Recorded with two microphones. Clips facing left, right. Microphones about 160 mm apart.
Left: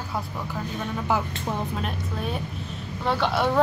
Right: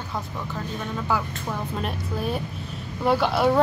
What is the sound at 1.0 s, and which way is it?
Music, 20° left (ahead or behind).